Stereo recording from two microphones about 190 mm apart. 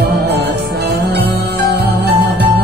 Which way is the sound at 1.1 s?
60° right (ahead or behind).